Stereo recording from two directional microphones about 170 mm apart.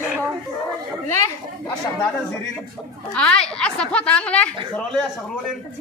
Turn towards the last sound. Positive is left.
turn(degrees=5)  # may be behind; listen again after turning